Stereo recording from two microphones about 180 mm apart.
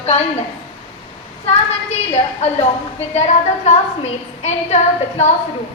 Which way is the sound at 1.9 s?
35° left (ahead or behind).